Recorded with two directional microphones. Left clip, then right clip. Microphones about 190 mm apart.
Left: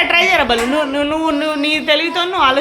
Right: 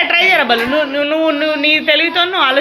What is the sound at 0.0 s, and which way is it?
Speech, 10° left (ahead or behind).